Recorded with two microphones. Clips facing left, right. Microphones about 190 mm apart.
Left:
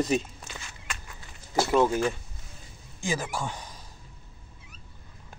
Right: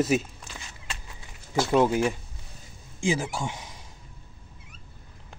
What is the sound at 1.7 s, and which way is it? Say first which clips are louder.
Speech: right 2 dB; 15° right (ahead or behind).